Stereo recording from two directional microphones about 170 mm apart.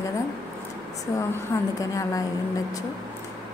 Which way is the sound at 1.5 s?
20° left (ahead or behind).